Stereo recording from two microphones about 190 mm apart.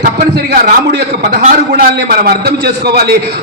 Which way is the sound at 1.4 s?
45° right (ahead or behind).